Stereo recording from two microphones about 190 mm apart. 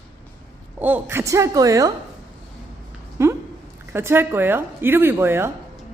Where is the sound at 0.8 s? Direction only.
10° right (ahead or behind).